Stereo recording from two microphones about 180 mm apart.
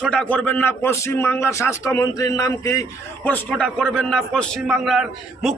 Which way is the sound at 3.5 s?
Centre (ahead or behind).